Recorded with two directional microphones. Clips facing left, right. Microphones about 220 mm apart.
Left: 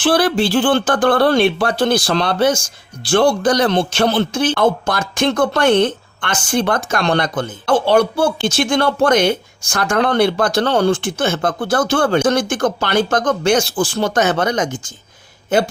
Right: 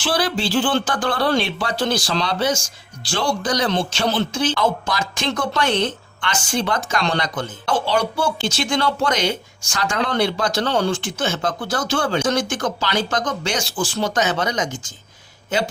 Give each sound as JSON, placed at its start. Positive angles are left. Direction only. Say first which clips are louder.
{"t": 0.0, "sound": "speech", "louder": "left 7 dB", "side_deg": 55}